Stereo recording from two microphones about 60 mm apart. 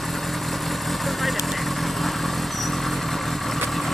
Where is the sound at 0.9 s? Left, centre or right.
Centre.